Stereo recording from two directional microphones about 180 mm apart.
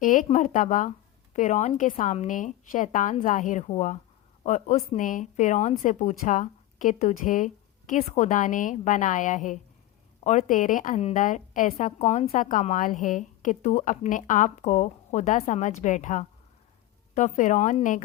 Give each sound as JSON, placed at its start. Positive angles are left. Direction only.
{"t": 0.0, "sound": "a woman's voice", "side_deg": 45}